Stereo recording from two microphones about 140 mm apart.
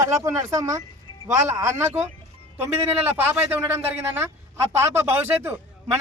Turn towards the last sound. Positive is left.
turn(degrees=-15)  # may be behind; listen again after turning